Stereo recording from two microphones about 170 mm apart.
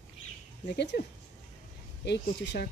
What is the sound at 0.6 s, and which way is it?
Speech, 85° left.